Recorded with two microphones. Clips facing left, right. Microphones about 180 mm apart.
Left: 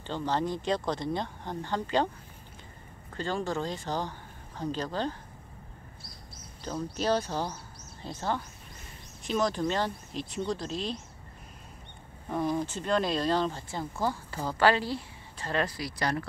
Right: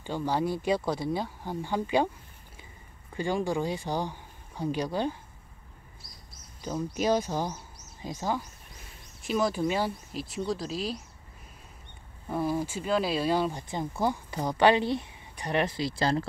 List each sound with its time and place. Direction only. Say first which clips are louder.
0.0 s speech: right 1 dB; 10° right (ahead or behind)
3.2 s speech: right 3 dB; 10° right (ahead or behind)
6.6 s speech: right 2 dB; 10° right (ahead or behind)
12.3 s speech: even; 5° right (ahead or behind); by 16.3 s 25° right (ahead or behind)